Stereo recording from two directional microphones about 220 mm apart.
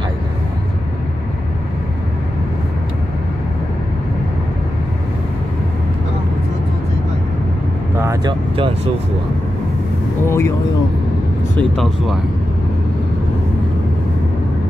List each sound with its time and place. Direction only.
8.0 s vehicle: 15° right (ahead or behind)
10.2 s speech: 10° left (ahead or behind)
11.7 s speech: centre (ahead or behind)